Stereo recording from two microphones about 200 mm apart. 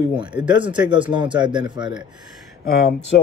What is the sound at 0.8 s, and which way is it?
A man's voice, 25° right (ahead or behind).